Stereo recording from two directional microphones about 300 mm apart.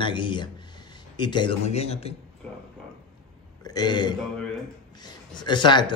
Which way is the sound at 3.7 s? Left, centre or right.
Centre.